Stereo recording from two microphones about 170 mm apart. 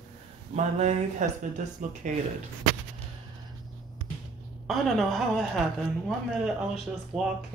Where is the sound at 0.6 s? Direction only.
40° right (ahead or behind).